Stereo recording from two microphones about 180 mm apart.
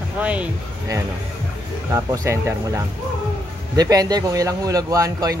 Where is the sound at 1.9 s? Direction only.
15° right (ahead or behind).